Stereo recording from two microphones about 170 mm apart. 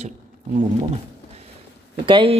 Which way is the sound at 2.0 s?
30° right (ahead or behind).